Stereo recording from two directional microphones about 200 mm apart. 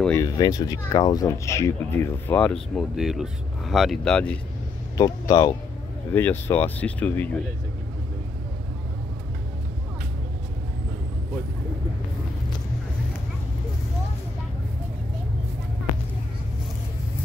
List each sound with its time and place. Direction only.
0.0 s speech: 10° left (ahead or behind)
4.9 s speech: 15° left (ahead or behind)